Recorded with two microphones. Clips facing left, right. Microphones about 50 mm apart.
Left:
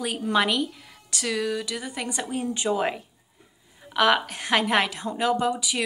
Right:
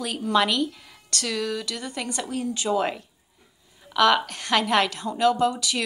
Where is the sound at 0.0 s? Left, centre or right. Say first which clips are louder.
Right 1 dB; centre.